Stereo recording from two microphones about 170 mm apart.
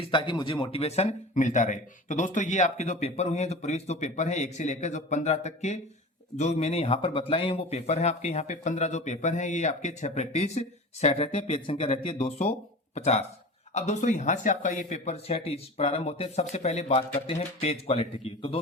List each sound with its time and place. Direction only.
0.0 s a man's voice: 30° left (ahead or behind)